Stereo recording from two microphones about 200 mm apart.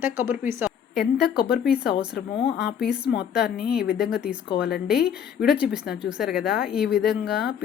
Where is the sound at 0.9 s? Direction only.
50° left (ahead or behind).